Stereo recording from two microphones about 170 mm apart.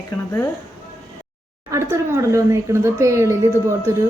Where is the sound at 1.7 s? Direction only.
15° right (ahead or behind).